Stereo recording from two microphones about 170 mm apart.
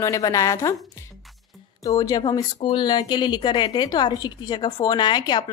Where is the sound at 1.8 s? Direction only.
20° left (ahead or behind).